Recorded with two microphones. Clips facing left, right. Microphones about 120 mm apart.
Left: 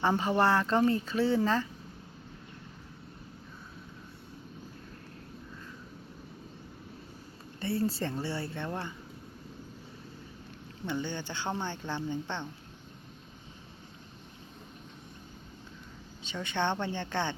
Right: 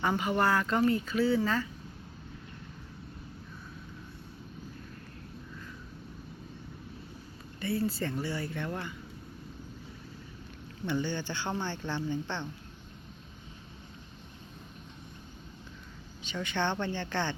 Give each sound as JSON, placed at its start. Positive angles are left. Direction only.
{"t": 0.0, "sound": "speech", "side_deg": 30}
{"t": 7.6, "sound": "speech", "side_deg": 35}
{"t": 10.8, "sound": "speech", "side_deg": 15}
{"t": 16.3, "sound": "speech", "side_deg": 20}